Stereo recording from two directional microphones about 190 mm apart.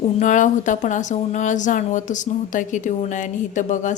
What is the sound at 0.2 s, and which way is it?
A woman's voice, 40° left (ahead or behind).